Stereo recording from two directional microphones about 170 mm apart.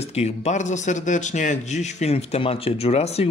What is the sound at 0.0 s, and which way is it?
Speech, 40° left (ahead or behind).